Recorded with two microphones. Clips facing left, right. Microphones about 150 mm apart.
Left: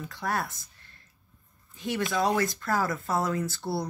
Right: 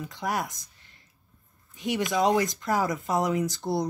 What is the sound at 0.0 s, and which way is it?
Speech, 15° right (ahead or behind).